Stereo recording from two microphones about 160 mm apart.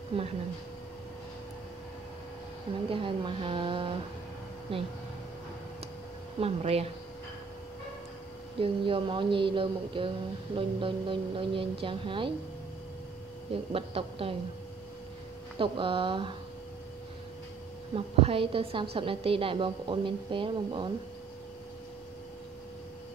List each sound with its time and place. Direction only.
0.1 s a woman's voice: 35° right (ahead or behind)
2.9 s a woman's voice: 35° right (ahead or behind)
6.4 s a woman's voice: 40° right (ahead or behind)
8.5 s a woman's voice: 35° right (ahead or behind)
13.7 s a woman's voice: 35° right (ahead or behind)
15.5 s a woman's voice: 30° right (ahead or behind)
17.9 s a woman's voice: 35° right (ahead or behind)